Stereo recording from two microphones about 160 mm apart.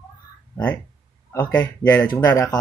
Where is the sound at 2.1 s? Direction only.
25° left (ahead or behind).